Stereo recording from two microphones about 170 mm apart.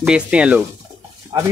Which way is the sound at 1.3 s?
20° right (ahead or behind).